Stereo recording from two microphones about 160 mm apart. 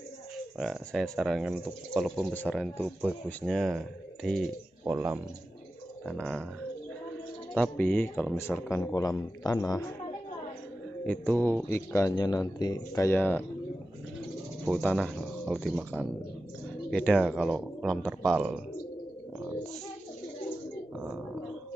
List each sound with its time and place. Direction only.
0.6 s speech: centre (ahead or behind)
4.8 s speech: 10° right (ahead or behind)
6.0 s speech: 5° left (ahead or behind)
7.5 s speech: 10° left (ahead or behind)
11.1 s speech: 10° left (ahead or behind)
14.7 s speech: 5° left (ahead or behind)
16.9 s speech: 5° left (ahead or behind)
21.0 s a sound: 5° right (ahead or behind)